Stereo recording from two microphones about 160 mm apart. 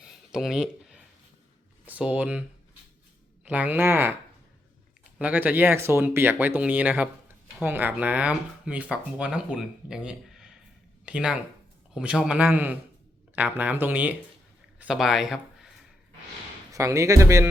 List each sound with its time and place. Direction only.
0.0 s a sound: 5° right (ahead or behind)
1.9 s speech: 10° right (ahead or behind)
3.4 s speech: 10° right (ahead or behind)
5.2 s speech: 10° right (ahead or behind)
16.7 s speech: 20° right (ahead or behind)